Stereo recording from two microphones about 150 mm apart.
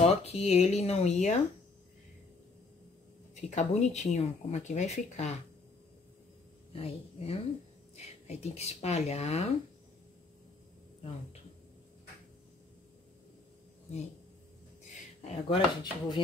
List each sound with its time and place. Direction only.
0.0 s speech: 45° left (ahead or behind)
3.3 s speech: 50° left (ahead or behind)
6.7 s a woman's voice: 40° left (ahead or behind)
15.4 s speech: 30° left (ahead or behind)